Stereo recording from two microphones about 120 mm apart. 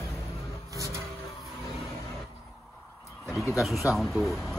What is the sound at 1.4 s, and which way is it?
Vehicle, centre (ahead or behind).